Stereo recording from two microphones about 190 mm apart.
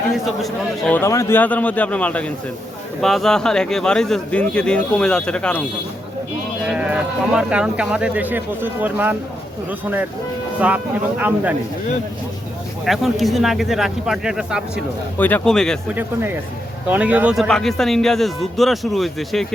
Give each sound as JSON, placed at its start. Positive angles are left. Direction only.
{"t": 0.4, "sound": "a man's voice", "side_deg": 10}
{"t": 6.7, "sound": "speech", "side_deg": -5}
{"t": 11.2, "sound": "speech", "side_deg": -10}
{"t": 12.8, "sound": "speech", "side_deg": 0}
{"t": 16.0, "sound": "speech", "side_deg": -10}